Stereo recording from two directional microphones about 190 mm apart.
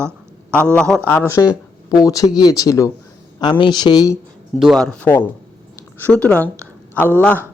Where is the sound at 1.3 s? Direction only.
20° left (ahead or behind).